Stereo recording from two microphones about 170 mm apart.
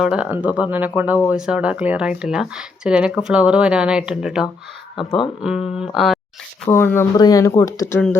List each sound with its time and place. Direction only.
0.0 s speech: 5° right (ahead or behind)
4.9 s speech: 30° left (ahead or behind)
5.4 s speech: 5° right (ahead or behind)
6.7 s speech: 10° left (ahead or behind)